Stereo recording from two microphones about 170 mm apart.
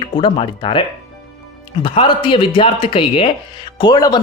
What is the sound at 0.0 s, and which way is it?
Speech, 30° left (ahead or behind).